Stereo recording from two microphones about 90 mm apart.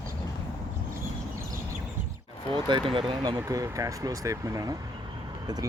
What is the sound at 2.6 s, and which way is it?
Speech, 65° right (ahead or behind).